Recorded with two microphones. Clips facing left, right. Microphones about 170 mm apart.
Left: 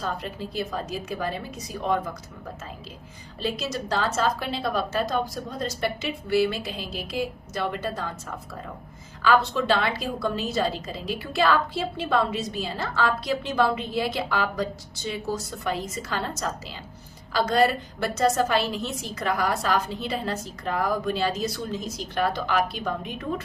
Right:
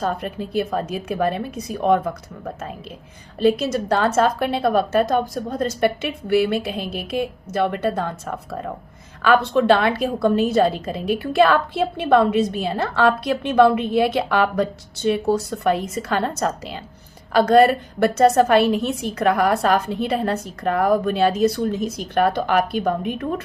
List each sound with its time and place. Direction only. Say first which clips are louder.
0.0 s a woman's voice: right 6 dB; 55° right (ahead or behind)
3.4 s a woman's voice: right 11 dB; 55° right (ahead or behind)
9.2 s a woman's voice: right 6 dB; 60° right (ahead or behind)